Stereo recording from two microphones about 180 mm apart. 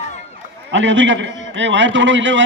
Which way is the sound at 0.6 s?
90° right.